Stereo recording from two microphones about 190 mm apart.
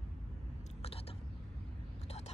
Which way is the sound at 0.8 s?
30° left (ahead or behind).